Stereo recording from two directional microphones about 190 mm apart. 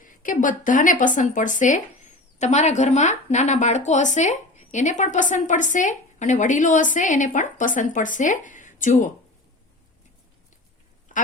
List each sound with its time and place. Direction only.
0.0 s speech: 45° left (ahead or behind)
11.1 s quack: 45° left (ahead or behind)